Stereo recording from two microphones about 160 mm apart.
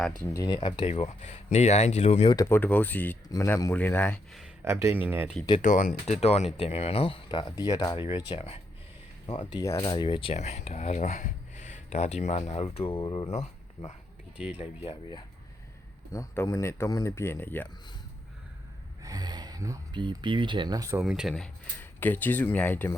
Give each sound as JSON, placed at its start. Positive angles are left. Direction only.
{"t": 0.3, "sound": "speech", "side_deg": 25}
{"t": 0.9, "sound": "speech", "side_deg": 40}
{"t": 2.3, "sound": "speech", "side_deg": 20}
{"t": 2.6, "sound": "speech", "side_deg": 10}
{"t": 4.6, "sound": "speech", "side_deg": -15}
{"t": 5.6, "sound": "speech", "side_deg": 55}
{"t": 6.1, "sound": "speech", "side_deg": 40}
{"t": 14.3, "sound": "speech", "side_deg": -5}
{"t": 14.6, "sound": "speech", "side_deg": 35}
{"t": 16.1, "sound": "speech", "side_deg": 15}
{"t": 19.0, "sound": "speech", "side_deg": -25}
{"t": 21.0, "sound": "speech", "side_deg": 0}